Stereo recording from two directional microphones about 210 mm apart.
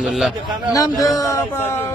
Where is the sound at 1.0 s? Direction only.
15° left (ahead or behind).